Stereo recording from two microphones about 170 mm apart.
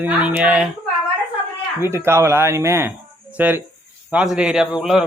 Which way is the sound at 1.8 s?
15° right (ahead or behind).